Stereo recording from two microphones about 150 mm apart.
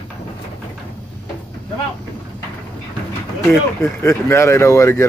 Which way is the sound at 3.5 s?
15° left (ahead or behind).